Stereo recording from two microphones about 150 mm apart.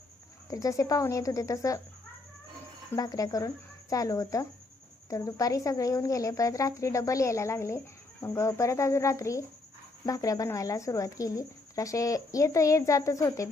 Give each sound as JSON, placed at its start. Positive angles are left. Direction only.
{"t": 0.5, "sound": "a woman's voice", "side_deg": 20}
{"t": 2.9, "sound": "a woman's voice", "side_deg": 25}